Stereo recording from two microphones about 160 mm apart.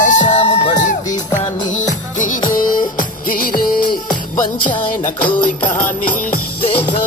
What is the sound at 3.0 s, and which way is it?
Music, 65° left (ahead or behind).